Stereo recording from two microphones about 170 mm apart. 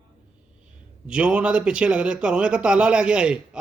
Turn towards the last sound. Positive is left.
turn(degrees=-5)  # may be behind; listen again after turning